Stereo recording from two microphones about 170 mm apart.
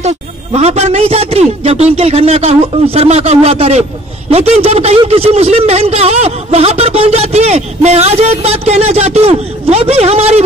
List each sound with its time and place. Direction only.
0.0 s a man's voice: 40° right (ahead or behind)